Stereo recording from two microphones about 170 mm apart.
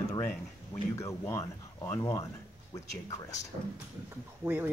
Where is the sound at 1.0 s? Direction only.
15° left (ahead or behind).